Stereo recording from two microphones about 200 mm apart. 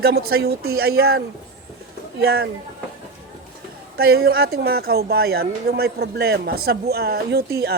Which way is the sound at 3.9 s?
50° right (ahead or behind).